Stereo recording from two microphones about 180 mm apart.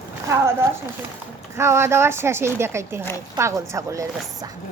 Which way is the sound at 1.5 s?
15° right (ahead or behind).